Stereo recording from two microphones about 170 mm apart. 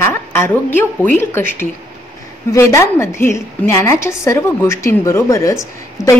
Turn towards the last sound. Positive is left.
turn(degrees=20)  # may be behind; listen again after turning